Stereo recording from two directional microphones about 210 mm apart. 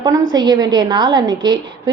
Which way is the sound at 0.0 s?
20° right (ahead or behind).